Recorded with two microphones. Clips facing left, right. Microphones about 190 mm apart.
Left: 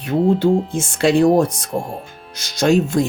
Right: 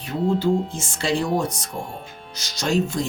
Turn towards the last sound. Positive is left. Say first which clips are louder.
# left 7 dB
turn(degrees=55)  # may be behind; listen again after turning